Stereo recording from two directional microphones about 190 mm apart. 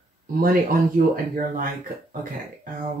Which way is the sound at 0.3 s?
50° right (ahead or behind).